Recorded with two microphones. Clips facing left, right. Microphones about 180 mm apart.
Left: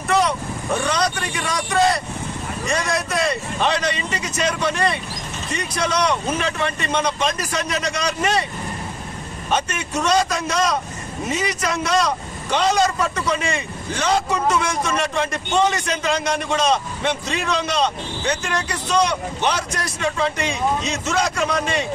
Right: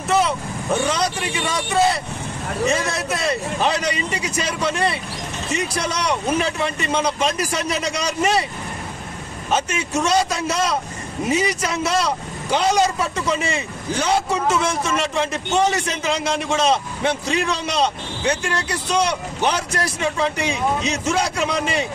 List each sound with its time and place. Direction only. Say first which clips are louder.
0.1 s speech: even; 5° right (ahead or behind)
3.1 s speech: even; 5° right (ahead or behind)
9.5 s speech: right 1 dB; 5° right (ahead or behind)